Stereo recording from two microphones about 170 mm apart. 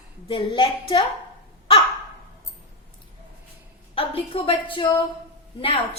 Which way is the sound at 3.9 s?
35° left (ahead or behind).